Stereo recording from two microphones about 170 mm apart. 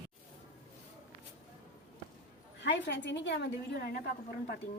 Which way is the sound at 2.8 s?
90° left.